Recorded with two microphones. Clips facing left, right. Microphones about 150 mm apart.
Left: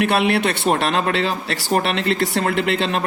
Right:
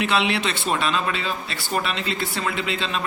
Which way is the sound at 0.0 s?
55° left (ahead or behind).